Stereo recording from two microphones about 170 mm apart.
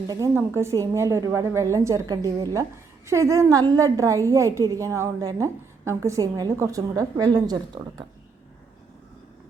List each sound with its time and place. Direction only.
0.1 s a woman's voice: 15° right (ahead or behind)